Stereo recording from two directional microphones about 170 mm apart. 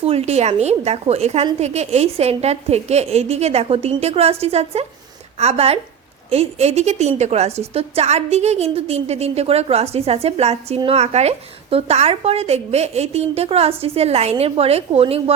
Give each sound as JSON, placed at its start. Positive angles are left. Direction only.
{"t": 0.0, "sound": "a woman's voice", "side_deg": -35}